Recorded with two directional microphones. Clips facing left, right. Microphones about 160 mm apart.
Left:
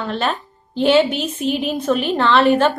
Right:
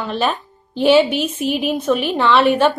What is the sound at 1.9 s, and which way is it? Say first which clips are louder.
Speech: even; 5° right (ahead or behind).